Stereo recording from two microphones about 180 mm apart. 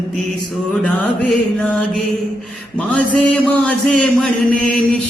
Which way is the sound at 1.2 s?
Centre (ahead or behind).